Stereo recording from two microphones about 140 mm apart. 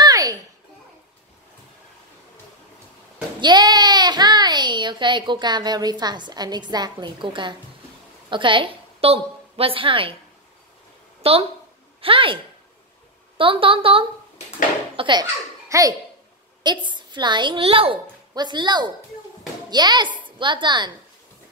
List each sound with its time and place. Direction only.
0.0 s a sound: 25° right (ahead or behind)
3.3 s a child's voice: 30° right (ahead or behind)
11.2 s a woman's voice: 45° right (ahead or behind)
13.4 s a woman's voice: 40° right (ahead or behind)
15.7 s a child's voice: 20° right (ahead or behind)
16.6 s a woman's voice: 35° right (ahead or behind)
18.3 s a woman's voice: 30° right (ahead or behind)